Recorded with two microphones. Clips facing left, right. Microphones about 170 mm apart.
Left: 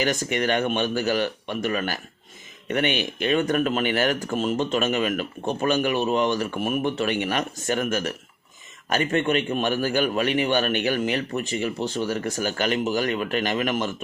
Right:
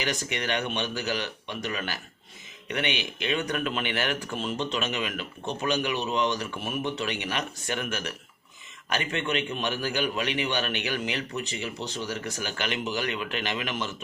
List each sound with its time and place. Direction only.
0.0 s speech: 45° left (ahead or behind)